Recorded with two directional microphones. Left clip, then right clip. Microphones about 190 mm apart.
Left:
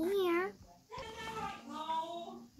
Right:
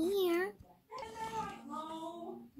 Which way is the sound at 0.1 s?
20° right (ahead or behind).